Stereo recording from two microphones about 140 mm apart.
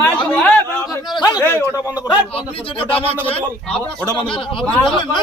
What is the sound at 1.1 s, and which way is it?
Speech, 30° left (ahead or behind).